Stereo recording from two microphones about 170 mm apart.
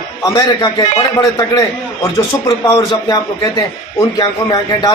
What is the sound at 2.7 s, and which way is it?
Speech, 25° left (ahead or behind).